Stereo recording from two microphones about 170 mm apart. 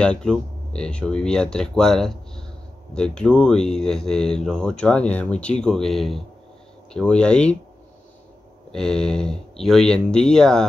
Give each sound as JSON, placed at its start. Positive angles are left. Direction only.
{"t": 0.0, "sound": "speech", "side_deg": 5}
{"t": 8.7, "sound": "speech", "side_deg": 5}